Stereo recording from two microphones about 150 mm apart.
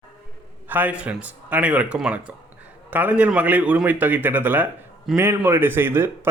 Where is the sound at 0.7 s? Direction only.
10° right (ahead or behind).